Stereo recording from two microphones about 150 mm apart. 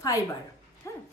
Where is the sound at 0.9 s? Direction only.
20° left (ahead or behind).